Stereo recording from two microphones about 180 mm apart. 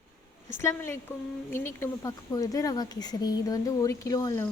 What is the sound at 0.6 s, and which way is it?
Speech, 15° left (ahead or behind).